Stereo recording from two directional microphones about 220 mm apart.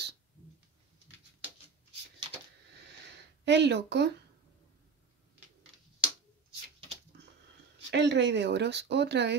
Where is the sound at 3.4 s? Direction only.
50° right (ahead or behind).